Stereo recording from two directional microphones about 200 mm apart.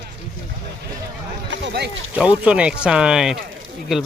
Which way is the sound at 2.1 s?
5° right (ahead or behind).